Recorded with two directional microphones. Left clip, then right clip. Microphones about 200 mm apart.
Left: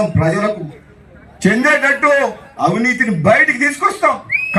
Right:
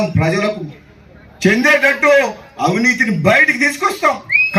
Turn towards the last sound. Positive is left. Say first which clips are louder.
# right 2 dB
turn(degrees=15)  # may be behind; listen again after turning